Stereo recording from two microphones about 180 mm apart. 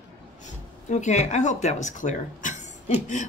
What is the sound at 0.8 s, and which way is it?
Speech, 40° left (ahead or behind).